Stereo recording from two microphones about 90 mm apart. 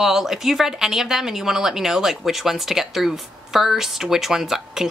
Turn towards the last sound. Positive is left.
turn(degrees=-5)  # may be behind; listen again after turning